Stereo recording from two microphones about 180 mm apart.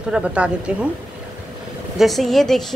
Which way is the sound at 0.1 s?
5° right (ahead or behind).